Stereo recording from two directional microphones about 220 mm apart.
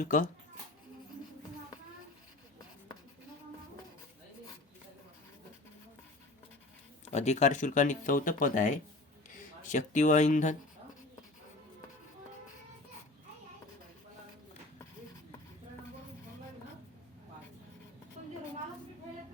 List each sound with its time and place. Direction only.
0.0 s speech: 40° left (ahead or behind)
7.0 s speech: 30° left (ahead or behind)